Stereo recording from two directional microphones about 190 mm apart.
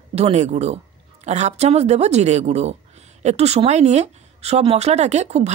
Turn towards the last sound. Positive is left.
turn(degrees=-35)  # may be behind; listen again after turning